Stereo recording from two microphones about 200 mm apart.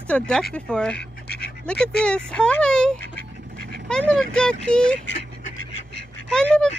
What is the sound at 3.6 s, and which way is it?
Dog, 50° right (ahead or behind).